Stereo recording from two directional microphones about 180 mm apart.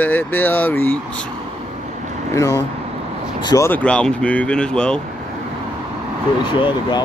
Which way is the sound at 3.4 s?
20° left (ahead or behind).